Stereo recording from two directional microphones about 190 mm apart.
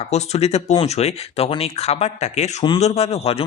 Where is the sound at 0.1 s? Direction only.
35° left (ahead or behind).